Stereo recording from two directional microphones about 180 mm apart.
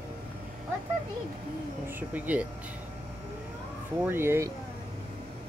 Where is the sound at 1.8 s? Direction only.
10° right (ahead or behind).